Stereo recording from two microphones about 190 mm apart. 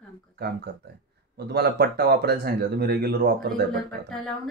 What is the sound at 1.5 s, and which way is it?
Speech, 55° right (ahead or behind).